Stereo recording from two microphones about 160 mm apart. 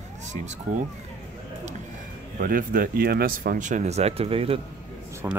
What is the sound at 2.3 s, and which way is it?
Speech, 65° right (ahead or behind).